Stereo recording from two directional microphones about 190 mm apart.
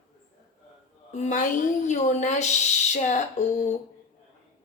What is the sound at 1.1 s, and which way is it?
A woman's voice, 40° left (ahead or behind).